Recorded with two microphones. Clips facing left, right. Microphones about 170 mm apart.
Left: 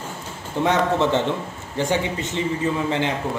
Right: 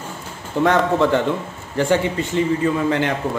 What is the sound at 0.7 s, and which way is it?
A man's voice, 20° left (ahead or behind).